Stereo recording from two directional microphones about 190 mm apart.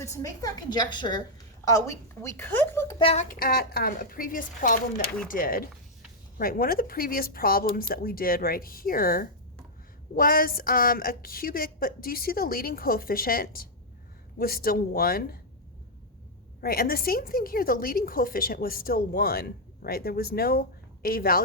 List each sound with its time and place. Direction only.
0.0 s a woman's voice: 15° left (ahead or behind)
3.0 s speech: 30° left (ahead or behind)
3.2 s a woman's voice: 50° left (ahead or behind)
16.6 s a woman's voice: 50° left (ahead or behind)